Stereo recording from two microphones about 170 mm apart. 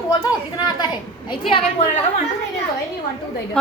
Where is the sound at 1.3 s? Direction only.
30° left (ahead or behind).